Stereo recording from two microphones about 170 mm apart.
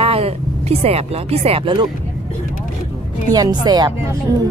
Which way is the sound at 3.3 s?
25° right (ahead or behind).